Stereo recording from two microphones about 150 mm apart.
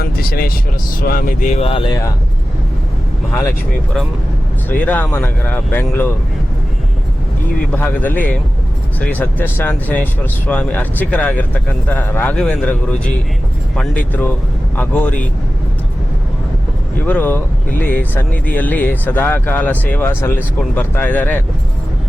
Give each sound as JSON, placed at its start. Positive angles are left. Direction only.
{"t": 0.0, "sound": "speech", "side_deg": 85}
{"t": 1.6, "sound": "speech", "side_deg": 35}
{"t": 1.9, "sound": "speech", "side_deg": 20}
{"t": 4.8, "sound": "speech", "side_deg": 10}
{"t": 7.7, "sound": "speech", "side_deg": 10}
{"t": 17.1, "sound": "speech", "side_deg": 10}